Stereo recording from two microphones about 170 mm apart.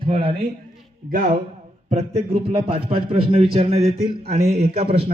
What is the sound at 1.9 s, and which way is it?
A man's voice, 40° right (ahead or behind).